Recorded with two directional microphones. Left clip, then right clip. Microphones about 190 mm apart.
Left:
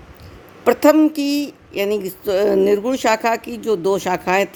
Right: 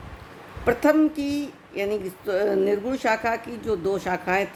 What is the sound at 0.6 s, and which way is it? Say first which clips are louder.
A woman's voice: left 7 dB; 45° left (ahead or behind).